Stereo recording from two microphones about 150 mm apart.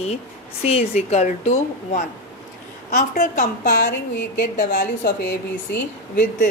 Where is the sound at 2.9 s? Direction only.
85° left.